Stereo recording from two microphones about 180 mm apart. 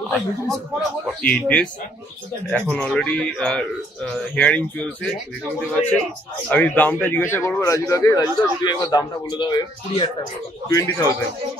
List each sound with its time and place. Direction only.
0.1 s a man's voice: centre (ahead or behind); by 11.1 s 20° left (ahead or behind)